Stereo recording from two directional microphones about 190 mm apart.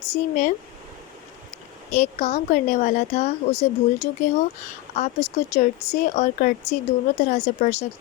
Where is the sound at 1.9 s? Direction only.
35° left (ahead or behind).